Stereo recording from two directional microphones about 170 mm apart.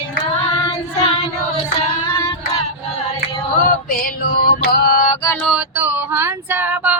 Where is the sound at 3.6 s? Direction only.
60° left (ahead or behind).